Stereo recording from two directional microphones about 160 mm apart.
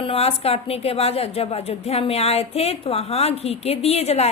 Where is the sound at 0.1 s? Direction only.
40° left (ahead or behind).